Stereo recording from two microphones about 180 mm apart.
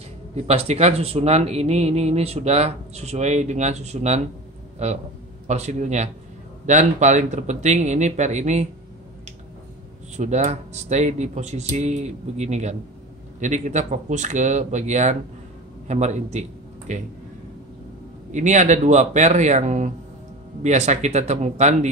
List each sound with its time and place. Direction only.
0.4 s speech: 35° right (ahead or behind)
10.1 s a man's voice: 40° right (ahead or behind)
18.3 s speech: 40° right (ahead or behind)